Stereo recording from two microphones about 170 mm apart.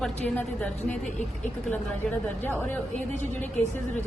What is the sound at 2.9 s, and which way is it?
Speech, 45° left (ahead or behind).